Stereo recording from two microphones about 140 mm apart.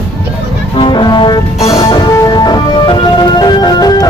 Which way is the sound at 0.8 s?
35° left (ahead or behind).